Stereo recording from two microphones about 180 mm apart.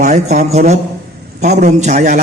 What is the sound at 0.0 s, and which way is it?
A man's voice, 40° right (ahead or behind).